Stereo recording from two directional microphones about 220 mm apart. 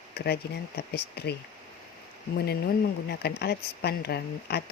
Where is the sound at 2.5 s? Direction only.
45° left (ahead or behind).